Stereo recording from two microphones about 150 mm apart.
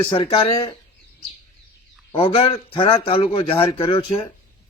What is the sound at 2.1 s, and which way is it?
Speech, 40° left (ahead or behind).